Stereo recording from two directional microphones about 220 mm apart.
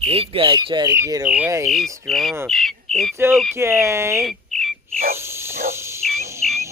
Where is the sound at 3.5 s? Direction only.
10° right (ahead or behind).